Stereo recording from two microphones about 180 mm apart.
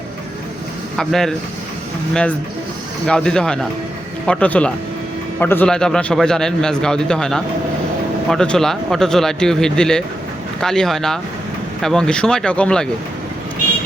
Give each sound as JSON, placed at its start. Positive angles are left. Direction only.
{"t": 0.9, "sound": "a man's voice", "side_deg": 0}
{"t": 3.1, "sound": "a man's voice", "side_deg": 5}